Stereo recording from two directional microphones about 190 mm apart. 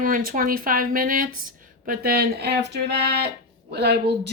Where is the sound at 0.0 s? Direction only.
45° right (ahead or behind).